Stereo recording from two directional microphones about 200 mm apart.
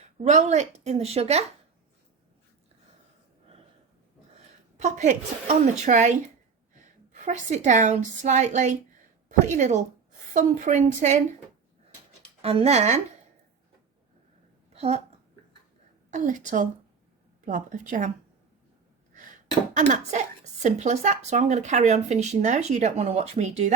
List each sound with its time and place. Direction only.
0.2 s a woman's voice: 35° right (ahead or behind)
4.8 s a woman's voice: 35° right (ahead or behind)
12.4 s a woman's voice: 30° right (ahead or behind)
14.7 s a sound: 30° right (ahead or behind)
16.1 s a woman's voice: 40° right (ahead or behind)
19.7 s a woman's voice: 35° right (ahead or behind)